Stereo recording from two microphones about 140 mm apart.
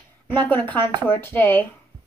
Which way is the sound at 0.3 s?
10° left (ahead or behind).